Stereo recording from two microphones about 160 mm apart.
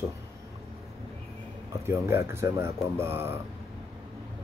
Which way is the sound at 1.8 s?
15° right (ahead or behind).